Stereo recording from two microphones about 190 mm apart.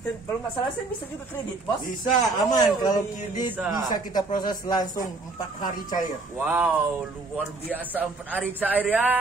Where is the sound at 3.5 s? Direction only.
5° right (ahead or behind).